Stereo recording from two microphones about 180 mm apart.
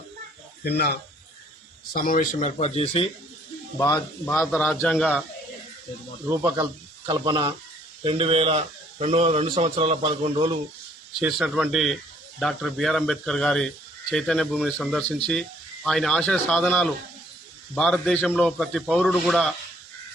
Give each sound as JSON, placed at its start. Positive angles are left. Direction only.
{"t": 0.6, "sound": "speech", "side_deg": 60}
{"t": 3.8, "sound": "speech", "side_deg": 20}
{"t": 4.4, "sound": "speech", "side_deg": 0}
{"t": 7.0, "sound": "speech", "side_deg": -20}
{"t": 11.2, "sound": "speech", "side_deg": -5}